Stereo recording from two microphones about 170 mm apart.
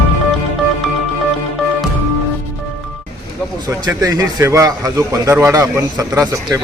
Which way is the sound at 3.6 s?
20° right (ahead or behind).